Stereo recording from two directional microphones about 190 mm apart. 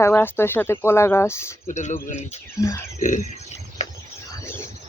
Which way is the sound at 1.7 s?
40° left (ahead or behind).